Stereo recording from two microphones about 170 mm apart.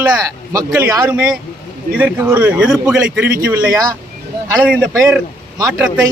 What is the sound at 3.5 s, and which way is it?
Speech, 15° right (ahead or behind).